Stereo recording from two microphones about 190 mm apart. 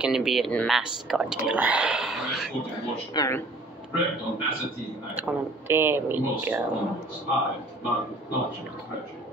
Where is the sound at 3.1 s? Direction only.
15° left (ahead or behind).